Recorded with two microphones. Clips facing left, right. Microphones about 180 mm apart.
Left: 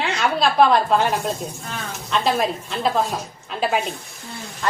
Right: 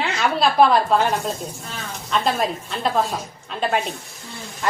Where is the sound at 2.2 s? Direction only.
Centre (ahead or behind).